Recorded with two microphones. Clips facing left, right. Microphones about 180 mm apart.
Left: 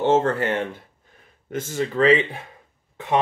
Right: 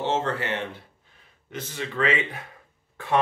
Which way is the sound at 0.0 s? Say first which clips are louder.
Left 7 dB; 50° left (ahead or behind).